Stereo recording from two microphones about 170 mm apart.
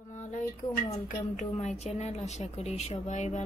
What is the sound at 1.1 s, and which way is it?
A woman's voice, 45° left (ahead or behind).